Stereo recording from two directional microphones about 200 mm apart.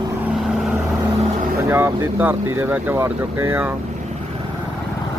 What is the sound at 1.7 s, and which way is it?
Speech, 10° right (ahead or behind).